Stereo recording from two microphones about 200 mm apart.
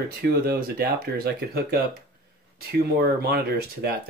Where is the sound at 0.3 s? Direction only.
50° right (ahead or behind).